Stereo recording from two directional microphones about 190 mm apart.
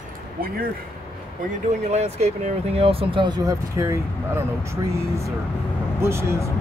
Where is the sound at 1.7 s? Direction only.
35° right (ahead or behind); by 6.5 s 15° right (ahead or behind).